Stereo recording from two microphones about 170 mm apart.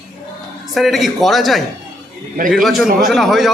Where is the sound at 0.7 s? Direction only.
Centre (ahead or behind).